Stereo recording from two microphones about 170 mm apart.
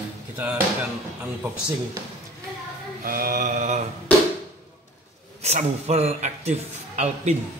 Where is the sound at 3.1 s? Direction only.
55° right (ahead or behind).